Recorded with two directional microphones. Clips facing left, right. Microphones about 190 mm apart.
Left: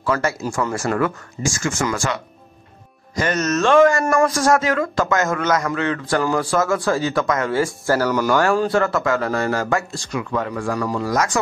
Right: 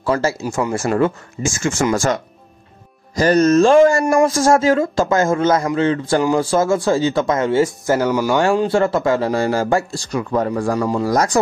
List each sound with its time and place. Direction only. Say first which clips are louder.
0.0 s speech: right 3 dB; 30° right (ahead or behind)
2.0 s speech: right 6 dB; 45° right (ahead or behind)